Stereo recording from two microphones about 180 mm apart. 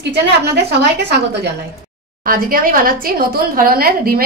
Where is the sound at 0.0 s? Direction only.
70° right (ahead or behind).